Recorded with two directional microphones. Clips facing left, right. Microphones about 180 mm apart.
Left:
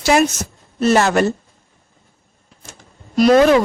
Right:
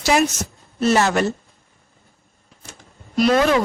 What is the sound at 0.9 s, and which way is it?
Speech, 50° left (ahead or behind).